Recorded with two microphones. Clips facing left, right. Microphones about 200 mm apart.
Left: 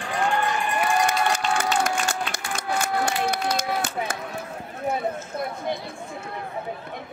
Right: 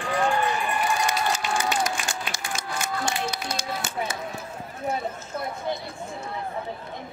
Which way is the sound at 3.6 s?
55° left (ahead or behind).